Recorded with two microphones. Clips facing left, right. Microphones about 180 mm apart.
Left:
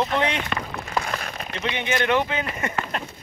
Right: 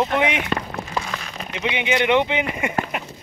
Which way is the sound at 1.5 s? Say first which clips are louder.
Right 4 dB; 15° right (ahead or behind).